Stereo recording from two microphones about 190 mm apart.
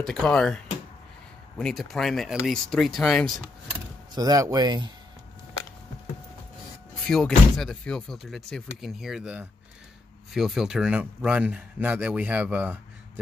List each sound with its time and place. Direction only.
0.0 s speech: 5° left (ahead or behind)
1.6 s speech: centre (ahead or behind)
4.1 s speech: 20° right (ahead or behind)
7.1 s speech: 5° left (ahead or behind)